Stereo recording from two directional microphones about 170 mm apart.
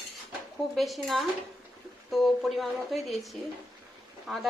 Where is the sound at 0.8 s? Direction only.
Centre (ahead or behind).